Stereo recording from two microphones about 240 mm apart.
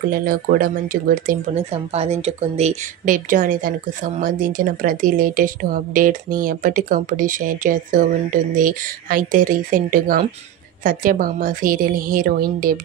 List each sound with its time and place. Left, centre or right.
0.1 s speech: right